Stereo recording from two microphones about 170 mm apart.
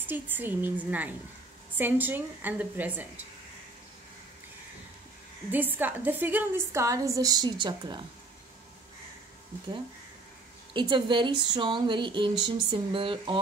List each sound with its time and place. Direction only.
0.0 s a woman's voice: 10° right (ahead or behind)
5.5 s a woman's voice: 10° right (ahead or behind); by 8.0 s 25° right (ahead or behind)
10.7 s speech: 30° right (ahead or behind)